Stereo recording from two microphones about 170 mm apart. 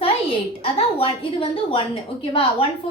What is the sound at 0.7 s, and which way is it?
A woman's voice, 35° left (ahead or behind).